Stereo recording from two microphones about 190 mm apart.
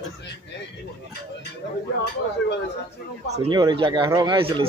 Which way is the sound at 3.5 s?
25° right (ahead or behind).